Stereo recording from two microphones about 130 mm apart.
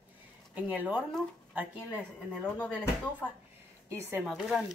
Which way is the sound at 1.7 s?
10° left (ahead or behind).